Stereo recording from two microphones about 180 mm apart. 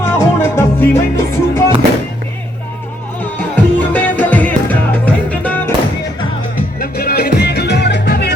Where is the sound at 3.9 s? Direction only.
10° left (ahead or behind).